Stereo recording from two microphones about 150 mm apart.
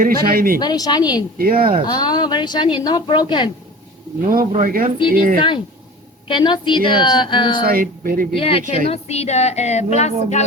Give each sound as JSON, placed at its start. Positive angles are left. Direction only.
{"t": 0.0, "sound": "speech", "side_deg": -75}
{"t": 0.6, "sound": "a woman's voice", "side_deg": 25}
{"t": 1.4, "sound": "speech", "side_deg": -75}
{"t": 1.9, "sound": "a woman's voice", "side_deg": 25}
{"t": 4.3, "sound": "speech", "side_deg": -65}
{"t": 6.2, "sound": "a woman's voice", "side_deg": 30}
{"t": 7.5, "sound": "speech", "side_deg": -75}
{"t": 8.4, "sound": "a woman's voice", "side_deg": 40}